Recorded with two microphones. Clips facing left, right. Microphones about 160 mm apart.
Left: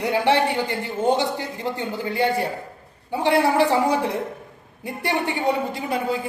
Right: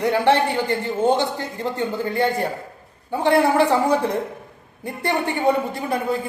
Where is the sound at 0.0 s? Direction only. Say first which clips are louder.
Right 2 dB; 15° left (ahead or behind).